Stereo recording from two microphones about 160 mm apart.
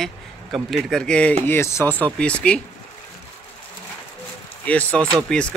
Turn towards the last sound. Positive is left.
turn(degrees=5)  # may be behind; listen again after turning